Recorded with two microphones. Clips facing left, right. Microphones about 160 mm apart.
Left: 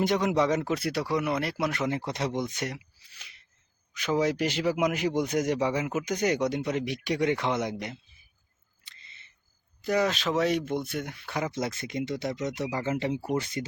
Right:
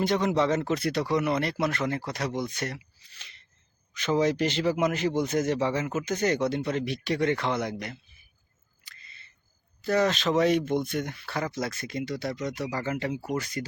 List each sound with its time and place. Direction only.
0.0 s a man's voice: 15° left (ahead or behind)
8.8 s single-lens reflex camera: 25° left (ahead or behind)
9.8 s speech: 10° left (ahead or behind)